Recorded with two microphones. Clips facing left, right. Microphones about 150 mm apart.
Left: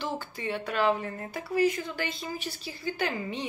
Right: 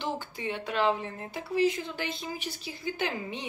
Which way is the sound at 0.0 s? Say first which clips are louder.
Even; 20° right (ahead or behind).